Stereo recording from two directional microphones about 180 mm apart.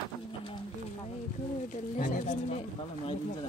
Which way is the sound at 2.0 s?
50° left (ahead or behind).